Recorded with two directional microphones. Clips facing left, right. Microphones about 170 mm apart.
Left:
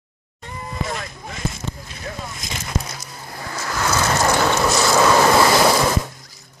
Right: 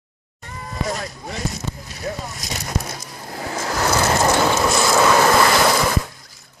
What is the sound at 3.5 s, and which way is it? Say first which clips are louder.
Vehicle: right 2 dB; 40° right (ahead or behind).